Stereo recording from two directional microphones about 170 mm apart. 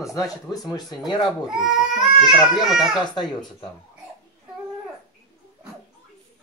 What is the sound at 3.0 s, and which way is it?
Speech, 25° left (ahead or behind).